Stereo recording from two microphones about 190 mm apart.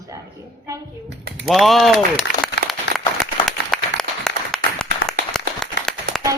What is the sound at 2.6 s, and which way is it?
Applause, 65° left (ahead or behind).